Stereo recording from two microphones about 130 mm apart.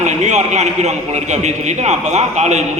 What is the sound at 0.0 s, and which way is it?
A man's voice, 65° right (ahead or behind).